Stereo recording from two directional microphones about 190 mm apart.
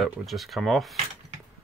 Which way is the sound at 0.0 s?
Centre (ahead or behind).